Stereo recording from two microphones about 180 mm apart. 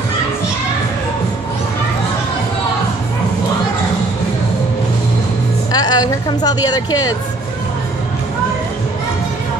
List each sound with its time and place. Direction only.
5.7 s a woman's voice: 20° left (ahead or behind)